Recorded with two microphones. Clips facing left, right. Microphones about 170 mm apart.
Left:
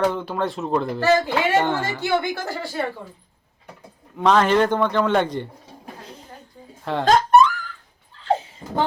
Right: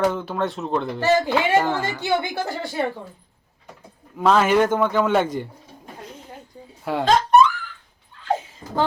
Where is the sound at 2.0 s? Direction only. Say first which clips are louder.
Even; 15° right (ahead or behind).